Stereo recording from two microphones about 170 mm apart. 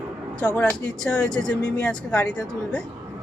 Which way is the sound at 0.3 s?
5° left (ahead or behind).